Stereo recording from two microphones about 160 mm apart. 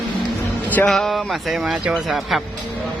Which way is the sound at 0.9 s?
Centre (ahead or behind).